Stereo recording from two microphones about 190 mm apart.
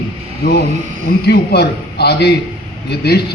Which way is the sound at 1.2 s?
60° left (ahead or behind).